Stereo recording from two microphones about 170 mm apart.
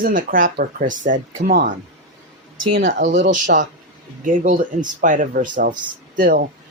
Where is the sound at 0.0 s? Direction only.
55° right (ahead or behind).